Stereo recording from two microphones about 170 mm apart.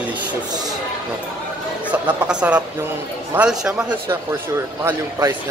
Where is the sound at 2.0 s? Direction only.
5° right (ahead or behind).